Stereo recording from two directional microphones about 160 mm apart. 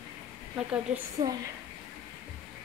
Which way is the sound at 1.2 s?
25° right (ahead or behind).